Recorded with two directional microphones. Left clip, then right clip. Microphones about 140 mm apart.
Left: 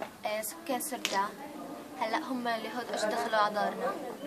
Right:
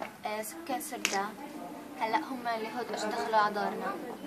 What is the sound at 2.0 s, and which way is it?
A woman's voice, 30° left (ahead or behind).